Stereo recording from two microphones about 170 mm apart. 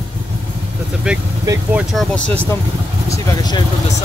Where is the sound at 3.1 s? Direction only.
20° left (ahead or behind).